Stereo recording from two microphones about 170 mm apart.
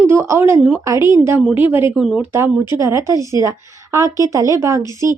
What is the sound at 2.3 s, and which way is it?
A woman's voice, 15° right (ahead or behind).